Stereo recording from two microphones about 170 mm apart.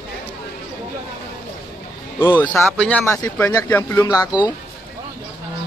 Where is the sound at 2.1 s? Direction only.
15° left (ahead or behind).